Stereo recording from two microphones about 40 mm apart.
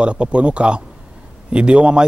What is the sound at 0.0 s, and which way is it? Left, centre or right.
A man's voice, right.